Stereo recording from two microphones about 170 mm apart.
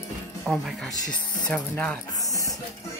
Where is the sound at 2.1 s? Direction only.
20° left (ahead or behind).